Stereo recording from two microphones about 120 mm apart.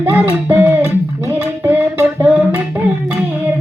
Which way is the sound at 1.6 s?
15° right (ahead or behind).